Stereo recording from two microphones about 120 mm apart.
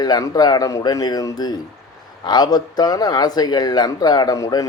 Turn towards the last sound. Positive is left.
turn(degrees=30)  # may be behind; listen again after turning